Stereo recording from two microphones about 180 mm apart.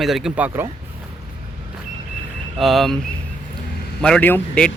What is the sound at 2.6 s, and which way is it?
Speech, centre (ahead or behind).